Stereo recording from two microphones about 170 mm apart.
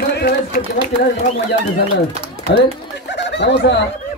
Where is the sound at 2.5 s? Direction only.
90° left.